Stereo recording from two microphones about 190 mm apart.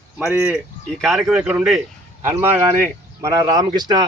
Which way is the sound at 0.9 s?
Centre (ahead or behind).